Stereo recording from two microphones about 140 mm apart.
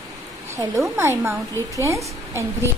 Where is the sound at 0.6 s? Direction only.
20° right (ahead or behind).